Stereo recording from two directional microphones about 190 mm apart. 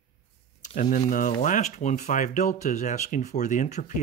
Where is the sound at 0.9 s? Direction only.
45° left (ahead or behind).